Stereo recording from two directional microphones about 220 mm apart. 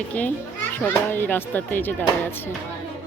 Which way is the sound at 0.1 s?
5° left (ahead or behind).